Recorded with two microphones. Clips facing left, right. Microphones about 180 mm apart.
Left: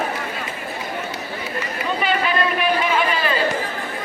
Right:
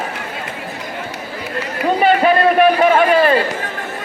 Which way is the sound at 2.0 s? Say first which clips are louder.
Right 9 dB; 50° right (ahead or behind).